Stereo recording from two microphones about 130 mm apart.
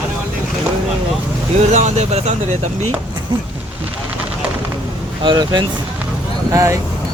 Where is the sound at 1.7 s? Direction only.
65° right (ahead or behind).